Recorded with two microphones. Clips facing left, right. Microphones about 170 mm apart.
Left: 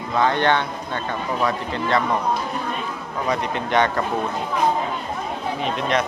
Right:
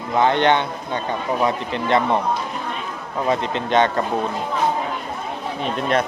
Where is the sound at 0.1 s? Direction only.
20° right (ahead or behind).